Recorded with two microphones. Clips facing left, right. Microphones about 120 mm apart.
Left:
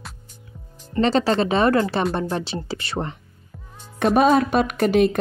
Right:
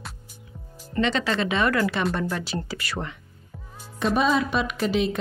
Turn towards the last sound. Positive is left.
turn(degrees=50)  # may be behind; listen again after turning